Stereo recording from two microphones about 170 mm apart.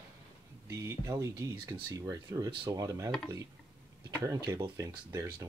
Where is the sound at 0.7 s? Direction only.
15° right (ahead or behind).